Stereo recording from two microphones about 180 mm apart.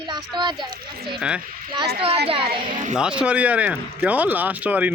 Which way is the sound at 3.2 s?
5° right (ahead or behind).